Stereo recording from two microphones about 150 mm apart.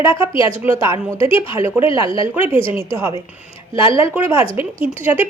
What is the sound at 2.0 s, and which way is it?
Speech, 35° left (ahead or behind).